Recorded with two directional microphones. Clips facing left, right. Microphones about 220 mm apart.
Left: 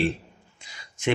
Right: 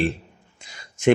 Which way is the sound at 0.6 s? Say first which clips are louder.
Right 3 dB; 45° right (ahead or behind).